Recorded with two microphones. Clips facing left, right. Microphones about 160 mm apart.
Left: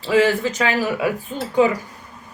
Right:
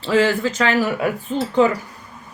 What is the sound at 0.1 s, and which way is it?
Speech, 15° left (ahead or behind).